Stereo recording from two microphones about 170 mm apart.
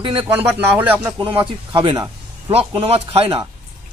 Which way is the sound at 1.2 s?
30° right (ahead or behind).